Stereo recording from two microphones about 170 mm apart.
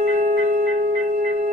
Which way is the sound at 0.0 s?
45° right (ahead or behind).